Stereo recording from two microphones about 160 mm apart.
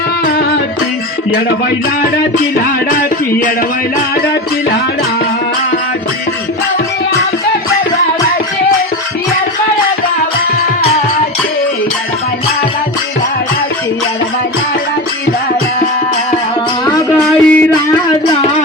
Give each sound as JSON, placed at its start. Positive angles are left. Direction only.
{"t": 0.3, "sound": "music", "side_deg": 85}
{"t": 2.6, "sound": "music", "side_deg": 70}
{"t": 17.2, "sound": "a sound", "side_deg": 5}